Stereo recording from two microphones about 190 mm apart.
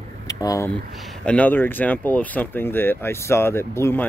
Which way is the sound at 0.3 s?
20° left (ahead or behind).